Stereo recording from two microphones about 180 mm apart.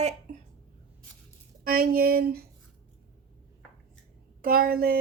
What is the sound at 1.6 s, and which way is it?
Speech, 55° right (ahead or behind).